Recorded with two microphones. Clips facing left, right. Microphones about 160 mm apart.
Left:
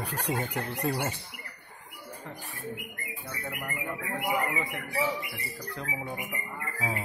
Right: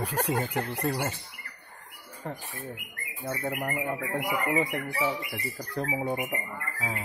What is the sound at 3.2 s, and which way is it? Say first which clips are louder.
Speech: right 8 dB; 40° right (ahead or behind).